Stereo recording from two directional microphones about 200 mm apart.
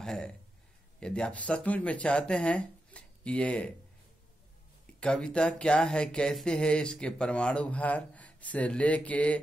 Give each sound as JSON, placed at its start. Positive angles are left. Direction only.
{"t": 0.0, "sound": "speech", "side_deg": 0}
{"t": 5.0, "sound": "speech", "side_deg": 5}